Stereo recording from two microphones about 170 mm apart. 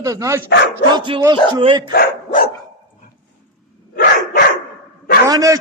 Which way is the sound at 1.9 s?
65° left (ahead or behind).